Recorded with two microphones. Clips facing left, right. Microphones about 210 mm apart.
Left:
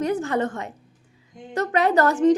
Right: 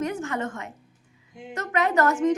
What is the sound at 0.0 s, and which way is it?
A woman's voice, 35° left (ahead or behind).